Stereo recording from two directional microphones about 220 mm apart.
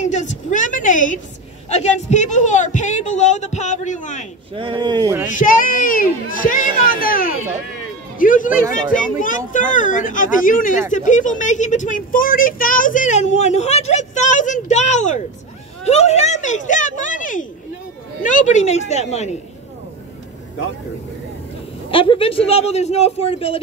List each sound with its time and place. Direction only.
0.0 s a sound: 30° left (ahead or behind)
1.7 s speech: 30° left (ahead or behind)
4.6 s speech: 20° right (ahead or behind)
5.3 s speech: 35° left (ahead or behind)
21.9 s a man's voice: 25° left (ahead or behind)